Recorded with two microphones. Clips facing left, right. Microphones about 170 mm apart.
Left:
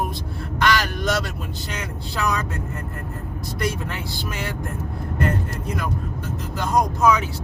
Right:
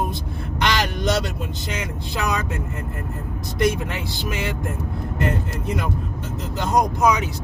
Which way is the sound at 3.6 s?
20° right (ahead or behind).